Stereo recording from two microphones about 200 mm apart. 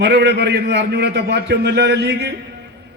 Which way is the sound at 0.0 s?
60° right (ahead or behind).